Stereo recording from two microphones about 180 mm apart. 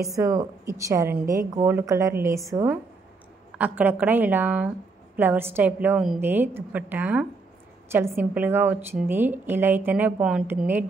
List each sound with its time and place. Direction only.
0.0 s a woman's voice: 20° right (ahead or behind)